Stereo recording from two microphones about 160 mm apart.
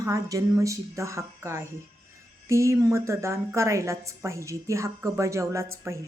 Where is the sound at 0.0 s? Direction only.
20° right (ahead or behind).